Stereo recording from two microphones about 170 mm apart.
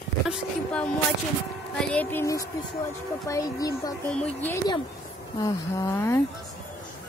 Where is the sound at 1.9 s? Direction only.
10° left (ahead or behind).